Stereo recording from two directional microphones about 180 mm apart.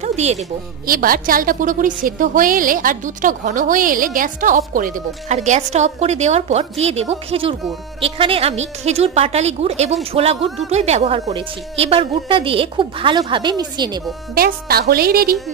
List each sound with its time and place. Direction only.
0.0 s a sound: 40° right (ahead or behind)
0.8 s a woman's voice: 55° right (ahead or behind); by 14.0 s 25° right (ahead or behind)
14.3 s a woman's voice: 55° right (ahead or behind)